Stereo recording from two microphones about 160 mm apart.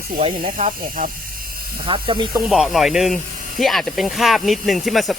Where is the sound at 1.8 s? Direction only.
30° right (ahead or behind).